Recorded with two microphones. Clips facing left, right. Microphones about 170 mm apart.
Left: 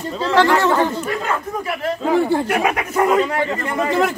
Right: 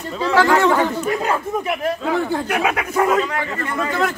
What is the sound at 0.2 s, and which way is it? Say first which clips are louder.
Speech: even; 10° right (ahead or behind).